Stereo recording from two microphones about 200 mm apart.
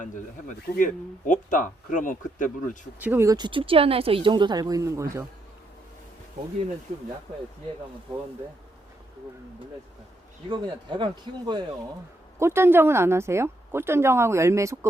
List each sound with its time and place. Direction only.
0.0 s speech: 40° left (ahead or behind)
3.0 s speech: 10° right (ahead or behind)
10.5 s speech: 25° right (ahead or behind)
12.4 s a woman's voice: 10° right (ahead or behind)